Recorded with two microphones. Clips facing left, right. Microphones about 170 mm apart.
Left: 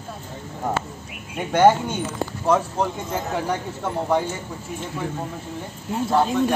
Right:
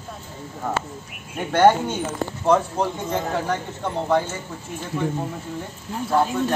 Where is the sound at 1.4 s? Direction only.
10° left (ahead or behind).